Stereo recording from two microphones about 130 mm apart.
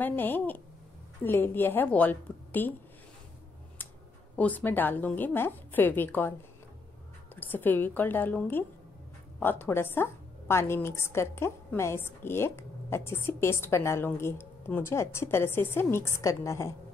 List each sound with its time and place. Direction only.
0.0 s a woman's voice: 15° left (ahead or behind)
4.4 s a woman's voice: 10° left (ahead or behind)
7.3 s a woman's voice: 15° left (ahead or behind)